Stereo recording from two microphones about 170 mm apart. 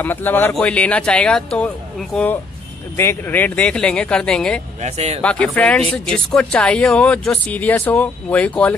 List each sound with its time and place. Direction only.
0.0 s speech: 10° left (ahead or behind)
4.8 s speech: 40° right (ahead or behind)
5.2 s speech: 5° left (ahead or behind)